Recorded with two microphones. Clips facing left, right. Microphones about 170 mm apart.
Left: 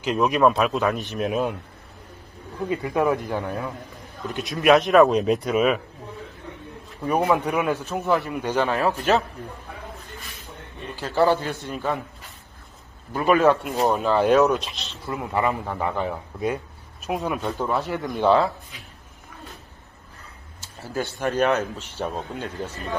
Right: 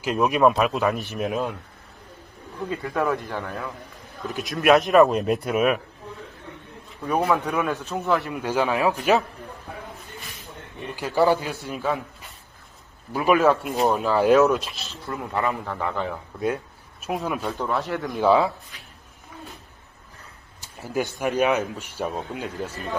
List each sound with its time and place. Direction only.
0.0 s speech: 5° right (ahead or behind)
2.7 s a man's voice: 15° left (ahead or behind)
4.3 s speech: centre (ahead or behind)
7.1 s a man's voice: 15° left (ahead or behind)
7.9 s speech: centre (ahead or behind)
11.0 s speech: 10° right (ahead or behind)
13.1 s speech: 5° right (ahead or behind); by 16.2 s 10° left (ahead or behind)
16.3 s speech: centre (ahead or behind)
20.6 s speech: 15° right (ahead or behind)